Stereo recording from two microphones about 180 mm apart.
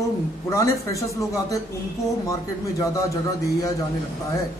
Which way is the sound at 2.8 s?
20° left (ahead or behind).